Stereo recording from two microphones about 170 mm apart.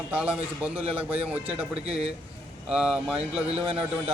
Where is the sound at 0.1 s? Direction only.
5° right (ahead or behind).